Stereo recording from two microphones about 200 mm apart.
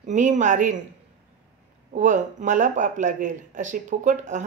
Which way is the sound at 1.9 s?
40° right (ahead or behind).